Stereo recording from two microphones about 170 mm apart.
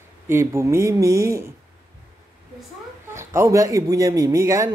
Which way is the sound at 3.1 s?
15° right (ahead or behind).